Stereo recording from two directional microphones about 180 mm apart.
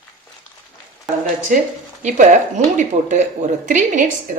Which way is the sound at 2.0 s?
45° right (ahead or behind).